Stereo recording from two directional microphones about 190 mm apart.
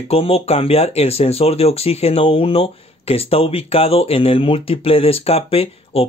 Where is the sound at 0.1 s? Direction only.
30° left (ahead or behind).